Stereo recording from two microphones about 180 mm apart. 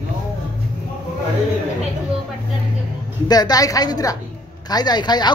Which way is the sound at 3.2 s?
20° left (ahead or behind).